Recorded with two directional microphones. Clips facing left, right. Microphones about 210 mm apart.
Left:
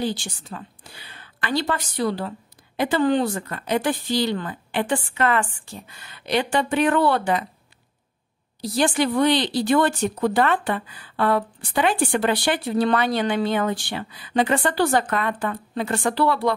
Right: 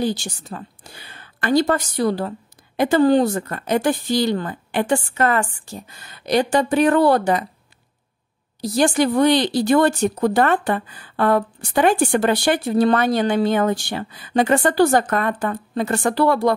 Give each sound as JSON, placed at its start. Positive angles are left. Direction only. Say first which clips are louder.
{"t": 0.0, "sound": "speech", "louder": "right 4 dB", "side_deg": -40}
{"t": 8.5, "sound": "speech", "louder": "right 4 dB", "side_deg": -45}